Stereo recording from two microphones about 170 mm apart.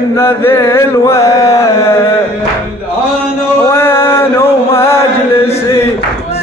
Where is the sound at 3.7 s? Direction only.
15° left (ahead or behind).